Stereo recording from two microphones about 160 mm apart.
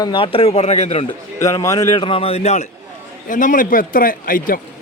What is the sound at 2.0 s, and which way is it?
Speech, 35° left (ahead or behind).